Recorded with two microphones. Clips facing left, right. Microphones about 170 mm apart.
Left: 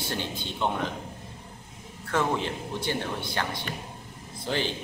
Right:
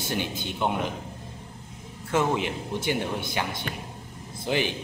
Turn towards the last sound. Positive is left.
turn(degrees=-15)  # may be behind; listen again after turning